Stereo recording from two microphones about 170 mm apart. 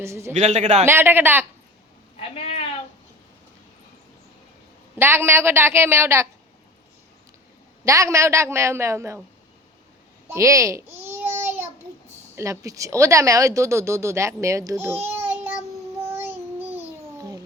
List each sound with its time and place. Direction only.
0.0 s speech: 15° right (ahead or behind)
0.3 s a man's voice: 45° right (ahead or behind)
0.9 s speech: 15° right (ahead or behind)
2.1 s speech: 35° left (ahead or behind)
4.9 s speech: 15° right (ahead or behind)
7.9 s speech: 15° right (ahead or behind)
10.2 s babbling: 15° right (ahead or behind)
12.4 s speech: 20° right (ahead or behind)
16.1 s child singing: 10° right (ahead or behind)